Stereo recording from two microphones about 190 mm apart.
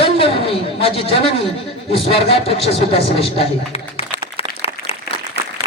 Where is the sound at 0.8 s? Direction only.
30° left (ahead or behind).